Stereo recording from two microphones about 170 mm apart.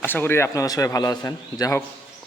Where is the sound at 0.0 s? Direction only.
10° left (ahead or behind).